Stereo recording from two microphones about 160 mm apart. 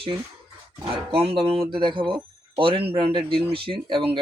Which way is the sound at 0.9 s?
35° right (ahead or behind).